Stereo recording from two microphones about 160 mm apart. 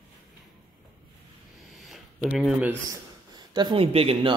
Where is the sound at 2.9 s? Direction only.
25° right (ahead or behind).